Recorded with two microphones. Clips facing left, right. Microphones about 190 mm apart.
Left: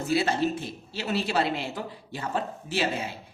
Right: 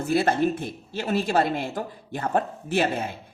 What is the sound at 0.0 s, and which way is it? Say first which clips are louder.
A woman's voice: right 3 dB; 50° right (ahead or behind).